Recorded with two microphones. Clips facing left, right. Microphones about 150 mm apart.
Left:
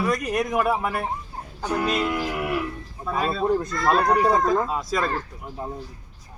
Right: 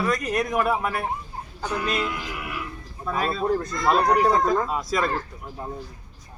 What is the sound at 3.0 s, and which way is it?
Speech, 5° left (ahead or behind).